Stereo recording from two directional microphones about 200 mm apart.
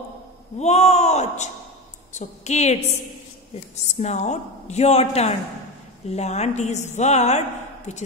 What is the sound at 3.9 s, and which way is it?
A woman's voice, 35° left (ahead or behind).